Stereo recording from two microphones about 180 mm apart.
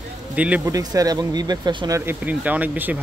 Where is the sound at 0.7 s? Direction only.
20° right (ahead or behind).